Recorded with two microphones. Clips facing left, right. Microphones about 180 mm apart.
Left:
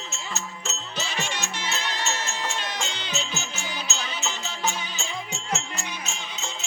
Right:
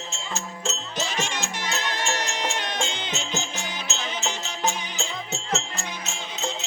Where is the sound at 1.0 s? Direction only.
20° right (ahead or behind).